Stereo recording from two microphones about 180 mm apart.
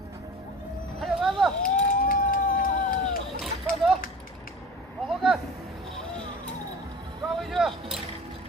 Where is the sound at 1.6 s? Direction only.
50° left (ahead or behind).